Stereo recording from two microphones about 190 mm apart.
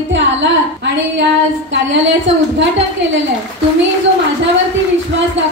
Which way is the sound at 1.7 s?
70° right (ahead or behind).